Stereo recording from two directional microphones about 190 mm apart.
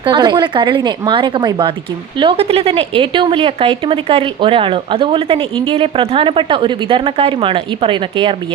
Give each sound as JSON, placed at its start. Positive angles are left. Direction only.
{"t": 0.0, "sound": "speech", "side_deg": -25}